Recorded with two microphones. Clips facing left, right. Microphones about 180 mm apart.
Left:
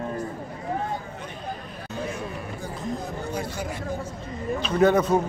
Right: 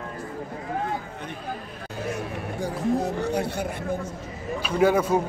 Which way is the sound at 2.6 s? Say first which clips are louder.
Right 9 dB; 80° right.